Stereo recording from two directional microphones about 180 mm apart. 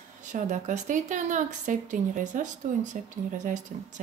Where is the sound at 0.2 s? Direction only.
45° right (ahead or behind).